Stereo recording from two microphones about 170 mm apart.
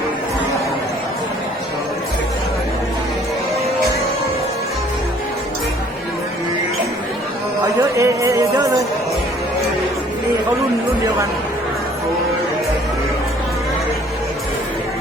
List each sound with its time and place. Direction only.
7.8 s music: 20° right (ahead or behind)